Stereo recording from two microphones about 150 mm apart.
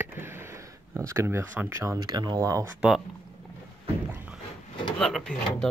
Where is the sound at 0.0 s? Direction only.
15° right (ahead or behind).